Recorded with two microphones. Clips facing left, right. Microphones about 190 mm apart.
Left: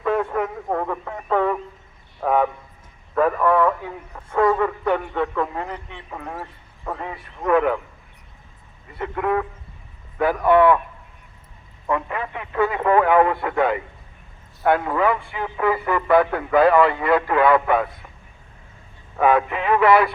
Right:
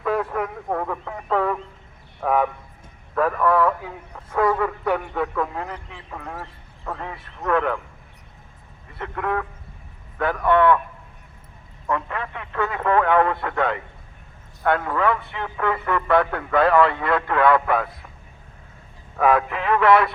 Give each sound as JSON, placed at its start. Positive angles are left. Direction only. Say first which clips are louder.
{"t": 0.0, "sound": "radio", "louder": "left 2 dB", "side_deg": -5}
{"t": 2.2, "sound": "a sound", "louder": "left 1 dB", "side_deg": 0}
{"t": 6.1, "sound": "speech", "louder": "left 2 dB", "side_deg": 5}
{"t": 8.9, "sound": "a man's voice", "louder": "left 3 dB", "side_deg": 5}
{"t": 11.9, "sound": "a man's voice", "louder": "left 2 dB", "side_deg": 10}
{"t": 19.2, "sound": "a man's voice", "louder": "left 1 dB", "side_deg": 0}